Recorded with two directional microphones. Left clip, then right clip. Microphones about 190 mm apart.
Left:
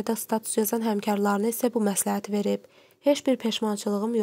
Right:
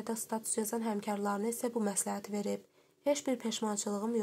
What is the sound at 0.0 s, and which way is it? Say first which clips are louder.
Speech: left 10 dB; 40° left (ahead or behind).